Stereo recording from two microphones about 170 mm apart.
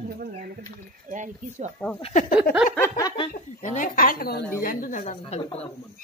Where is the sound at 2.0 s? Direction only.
35° left (ahead or behind).